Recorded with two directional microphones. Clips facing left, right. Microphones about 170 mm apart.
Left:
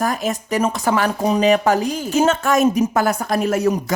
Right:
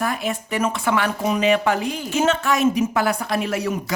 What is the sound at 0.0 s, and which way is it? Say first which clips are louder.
Speech: left 3 dB; 40° left (ahead or behind).